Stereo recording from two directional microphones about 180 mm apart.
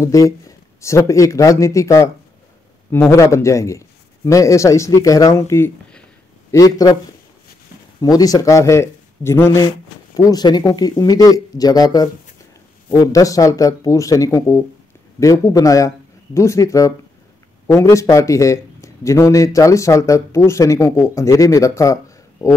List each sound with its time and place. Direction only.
0.0 s a man's voice: 20° left (ahead or behind)
6.5 s speech: 20° left (ahead or behind)
8.0 s speech: 20° left (ahead or behind)